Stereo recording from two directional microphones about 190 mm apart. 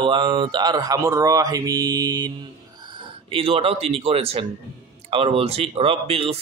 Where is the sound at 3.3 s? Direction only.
30° right (ahead or behind).